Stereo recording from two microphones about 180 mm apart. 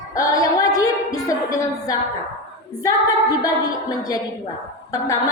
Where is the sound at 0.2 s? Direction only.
20° left (ahead or behind).